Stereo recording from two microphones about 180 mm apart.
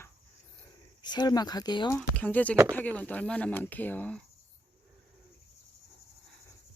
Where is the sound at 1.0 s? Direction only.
25° left (ahead or behind).